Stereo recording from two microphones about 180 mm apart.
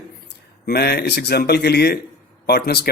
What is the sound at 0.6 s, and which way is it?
A man's voice, 60° left (ahead or behind).